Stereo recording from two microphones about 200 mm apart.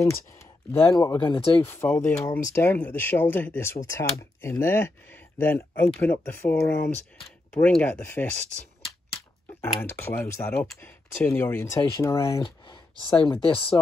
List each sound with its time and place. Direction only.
0.0 s speech: 15° left (ahead or behind)
1.6 s speech: 10° left (ahead or behind)
9.6 s speech: 10° left (ahead or behind); by 13.7 s 30° left (ahead or behind)